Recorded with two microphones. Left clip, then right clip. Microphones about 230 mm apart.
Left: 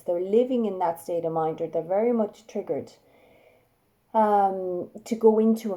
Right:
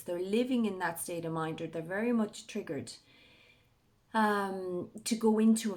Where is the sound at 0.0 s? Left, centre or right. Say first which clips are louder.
Left 10 dB; right.